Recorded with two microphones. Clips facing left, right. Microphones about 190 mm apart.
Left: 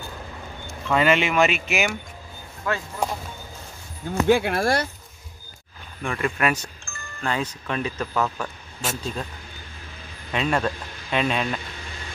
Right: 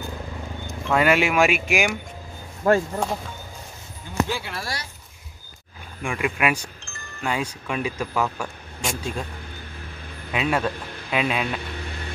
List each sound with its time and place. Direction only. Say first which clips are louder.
0.8 s speech: right 1 dB; 10° right (ahead or behind)
2.6 s speech: right 9 dB; 40° right (ahead or behind)
4.3 s speech: left 11 dB; 55° left (ahead or behind)
6.0 s speech: even; 10° right (ahead or behind)
10.3 s speech: even; 5° right (ahead or behind)